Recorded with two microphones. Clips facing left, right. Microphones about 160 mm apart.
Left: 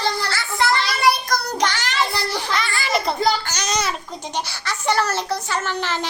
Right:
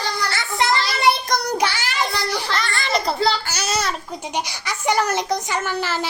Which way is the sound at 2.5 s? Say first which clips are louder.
Left 2 dB; centre (ahead or behind).